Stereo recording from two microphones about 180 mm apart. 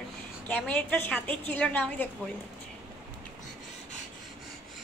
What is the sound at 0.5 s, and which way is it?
A child's voice, 5° left (ahead or behind).